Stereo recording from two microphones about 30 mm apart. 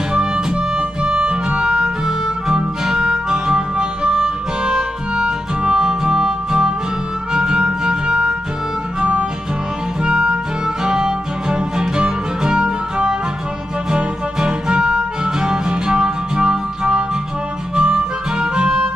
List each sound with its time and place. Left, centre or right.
0.1 s music: right
3.3 s harmonica: right
5.8 s music: right
10.0 s music: right
10.8 s music: right
17.7 s harmonica: right